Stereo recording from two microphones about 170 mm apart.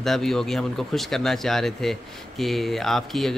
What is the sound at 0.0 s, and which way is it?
Speech, centre (ahead or behind).